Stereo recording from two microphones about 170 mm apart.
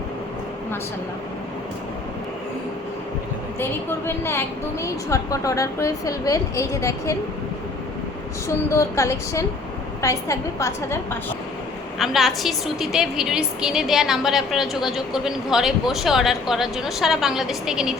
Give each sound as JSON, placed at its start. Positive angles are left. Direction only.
{"t": 3.6, "sound": "a woman's voice", "side_deg": 15}
{"t": 8.4, "sound": "a woman's voice", "side_deg": 15}
{"t": 11.9, "sound": "a woman's voice", "side_deg": 0}